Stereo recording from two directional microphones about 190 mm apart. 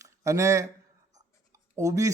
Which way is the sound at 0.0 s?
15° right (ahead or behind).